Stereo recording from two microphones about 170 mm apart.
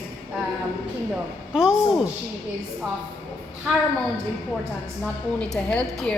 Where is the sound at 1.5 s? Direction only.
5° right (ahead or behind).